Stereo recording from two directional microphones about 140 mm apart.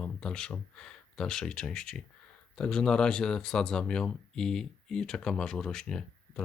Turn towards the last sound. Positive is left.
turn(degrees=5)  # may be behind; listen again after turning